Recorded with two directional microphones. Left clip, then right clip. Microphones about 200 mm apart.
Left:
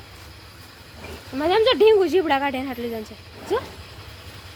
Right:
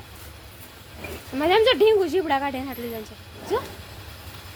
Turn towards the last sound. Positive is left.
turn(degrees=35)  # may be behind; listen again after turning